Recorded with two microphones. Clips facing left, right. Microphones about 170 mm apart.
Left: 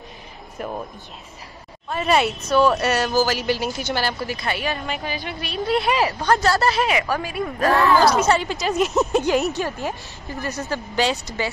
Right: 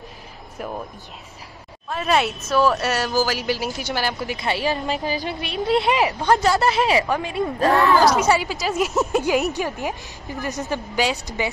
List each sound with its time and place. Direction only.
0.6 s speech: 5° left (ahead or behind)
1.9 s speech: centre (ahead or behind); by 5.2 s 35° right (ahead or behind)
5.7 s speech: 20° right (ahead or behind)